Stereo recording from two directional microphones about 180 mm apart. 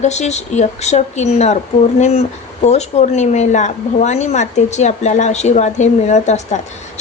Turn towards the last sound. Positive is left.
turn(degrees=40)  # may be behind; listen again after turning